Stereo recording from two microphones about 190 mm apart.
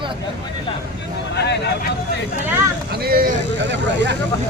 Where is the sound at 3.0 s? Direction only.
50° right (ahead or behind).